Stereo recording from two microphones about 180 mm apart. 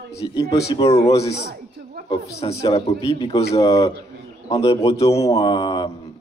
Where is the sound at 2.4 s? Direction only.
30° left (ahead or behind).